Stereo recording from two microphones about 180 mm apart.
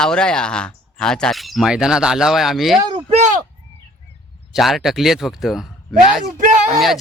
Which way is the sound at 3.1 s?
40° right (ahead or behind).